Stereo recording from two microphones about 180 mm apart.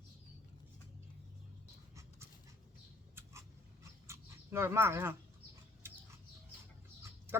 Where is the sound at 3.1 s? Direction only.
15° right (ahead or behind).